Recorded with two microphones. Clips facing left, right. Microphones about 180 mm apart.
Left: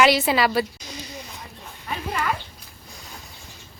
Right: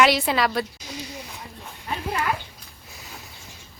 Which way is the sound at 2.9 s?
Centre (ahead or behind).